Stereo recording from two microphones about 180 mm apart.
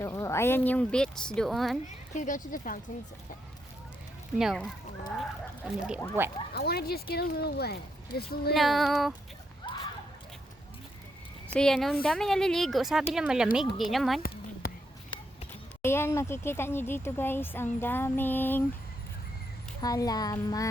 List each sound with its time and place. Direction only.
0.0 s speech: 15° left (ahead or behind); by 1.8 s centre (ahead or behind)
2.1 s speech: 45° left (ahead or behind)
4.4 s speech: 5° right (ahead or behind)
6.5 s speech: 60° left (ahead or behind)
8.5 s speech: centre (ahead or behind)
11.5 s speech: 5° left (ahead or behind)
14.2 s a sound: 55° left (ahead or behind)
15.8 s speech: 15° left (ahead or behind)
19.8 s music: 20° left (ahead or behind)